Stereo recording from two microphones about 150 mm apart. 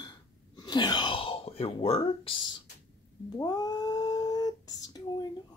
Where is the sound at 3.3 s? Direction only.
25° left (ahead or behind).